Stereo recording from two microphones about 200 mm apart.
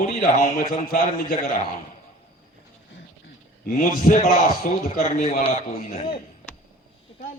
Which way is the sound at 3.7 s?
45° left (ahead or behind).